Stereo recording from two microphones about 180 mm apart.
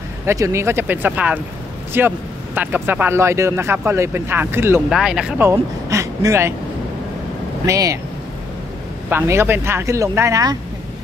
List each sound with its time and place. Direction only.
0.2 s speech: 15° right (ahead or behind)
7.6 s speech: 15° right (ahead or behind)
9.1 s speech: 15° right (ahead or behind)